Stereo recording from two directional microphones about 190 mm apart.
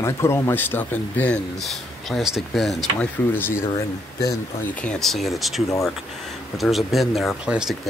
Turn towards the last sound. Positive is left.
turn(degrees=-5)  # may be behind; listen again after turning